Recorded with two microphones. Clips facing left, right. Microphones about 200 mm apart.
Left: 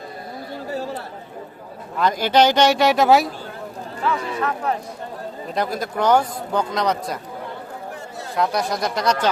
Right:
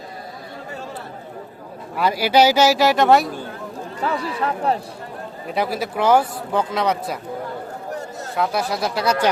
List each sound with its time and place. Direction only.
2.0 s speech: 10° right (ahead or behind)
4.0 s speech: 35° right (ahead or behind)
5.5 s speech: 5° right (ahead or behind)
8.4 s speech: 5° right (ahead or behind)